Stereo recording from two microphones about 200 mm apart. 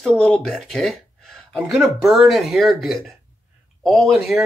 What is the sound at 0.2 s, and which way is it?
Speech, 5° left (ahead or behind).